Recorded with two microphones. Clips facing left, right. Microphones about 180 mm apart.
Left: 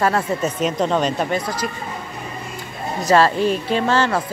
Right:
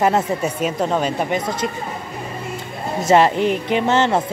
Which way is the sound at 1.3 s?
25° right (ahead or behind).